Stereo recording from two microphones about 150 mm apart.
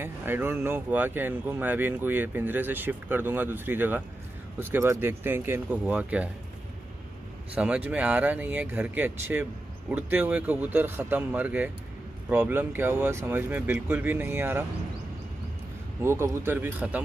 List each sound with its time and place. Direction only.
0.0 s speech: 15° right (ahead or behind)
7.5 s speech: 10° right (ahead or behind)
16.0 s speech: 15° right (ahead or behind)